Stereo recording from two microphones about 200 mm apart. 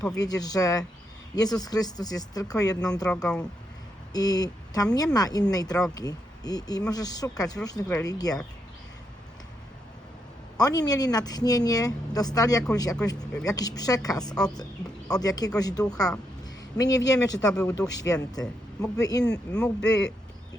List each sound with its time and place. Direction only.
0.2 s speech: 20° left (ahead or behind)
3.1 s speech: 5° left (ahead or behind)
4.1 s a woman's voice: 20° left (ahead or behind)
10.6 s speech: 20° left (ahead or behind)
17.5 s speech: 5° left (ahead or behind)
17.7 s speech: 20° left (ahead or behind)
19.5 s speech: 5° left (ahead or behind)